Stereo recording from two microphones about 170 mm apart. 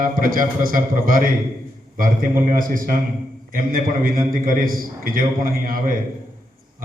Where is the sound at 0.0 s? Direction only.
55° right (ahead or behind).